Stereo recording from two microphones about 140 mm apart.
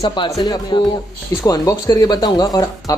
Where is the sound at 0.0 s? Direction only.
35° left (ahead or behind).